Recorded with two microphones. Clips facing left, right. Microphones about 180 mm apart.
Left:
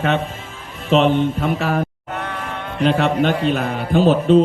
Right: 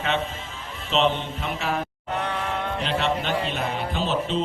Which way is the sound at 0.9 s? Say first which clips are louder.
Left 8 dB; 50° left (ahead or behind).